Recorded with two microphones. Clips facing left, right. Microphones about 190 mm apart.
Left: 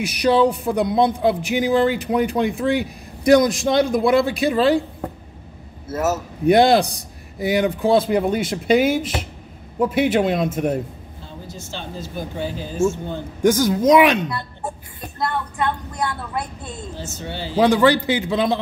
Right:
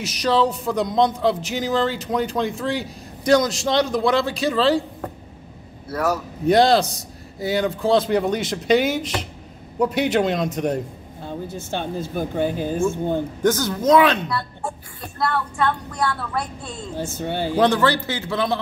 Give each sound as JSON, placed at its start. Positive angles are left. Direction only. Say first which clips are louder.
{"t": 0.2, "sound": "a man's voice", "louder": "left 3 dB", "side_deg": 10}
{"t": 3.8, "sound": "a man's voice", "louder": "left 4 dB", "side_deg": 55}
{"t": 4.4, "sound": "a man's voice", "louder": "left 2 dB", "side_deg": 15}
{"t": 5.9, "sound": "a man's voice", "louder": "left 1 dB", "side_deg": 25}
{"t": 11.2, "sound": "speech", "louder": "right 7 dB", "side_deg": -55}
{"t": 13.4, "sound": "a woman's voice", "louder": "left 7 dB", "side_deg": 10}
{"t": 16.9, "sound": "speech", "louder": "right 9 dB", "side_deg": -55}
{"t": 17.6, "sound": "a man's voice", "louder": "left 4 dB", "side_deg": 10}